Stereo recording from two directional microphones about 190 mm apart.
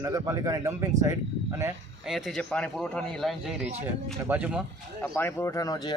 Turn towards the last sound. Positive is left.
turn(degrees=20)  # may be behind; listen again after turning